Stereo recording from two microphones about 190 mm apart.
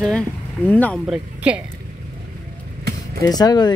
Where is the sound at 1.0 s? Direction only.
5° right (ahead or behind).